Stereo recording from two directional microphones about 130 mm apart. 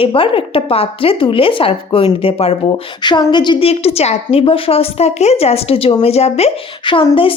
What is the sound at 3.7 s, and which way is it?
Speech, 50° left (ahead or behind).